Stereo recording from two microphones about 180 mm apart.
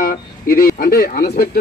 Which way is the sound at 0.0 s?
50° left (ahead or behind).